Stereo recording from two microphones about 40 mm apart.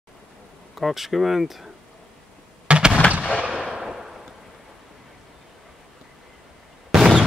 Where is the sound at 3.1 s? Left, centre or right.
Right.